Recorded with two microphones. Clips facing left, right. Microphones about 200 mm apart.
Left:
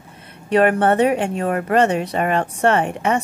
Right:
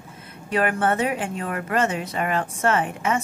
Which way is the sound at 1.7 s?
65° left (ahead or behind).